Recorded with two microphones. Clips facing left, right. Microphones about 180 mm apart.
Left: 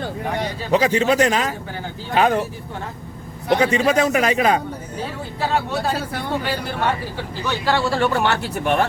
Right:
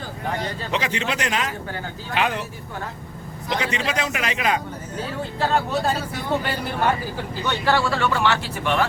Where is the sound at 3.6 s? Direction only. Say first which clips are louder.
Left 9 dB; 45° left (ahead or behind).